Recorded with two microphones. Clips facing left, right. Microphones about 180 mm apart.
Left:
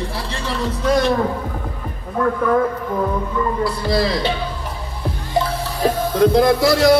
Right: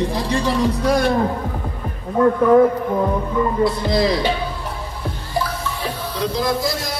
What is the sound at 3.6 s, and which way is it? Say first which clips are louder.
Speech: right 1 dB; 20° right (ahead or behind).